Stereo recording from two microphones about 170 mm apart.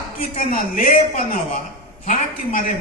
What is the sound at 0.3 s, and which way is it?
Speech, 55° left (ahead or behind).